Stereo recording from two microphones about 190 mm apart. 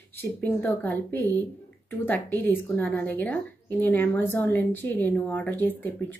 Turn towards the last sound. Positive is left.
turn(degrees=10)  # may be behind; listen again after turning